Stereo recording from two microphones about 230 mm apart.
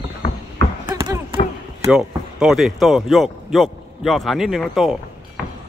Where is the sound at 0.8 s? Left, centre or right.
Centre.